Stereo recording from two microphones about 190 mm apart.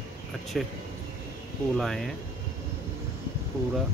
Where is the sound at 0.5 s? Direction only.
Centre (ahead or behind).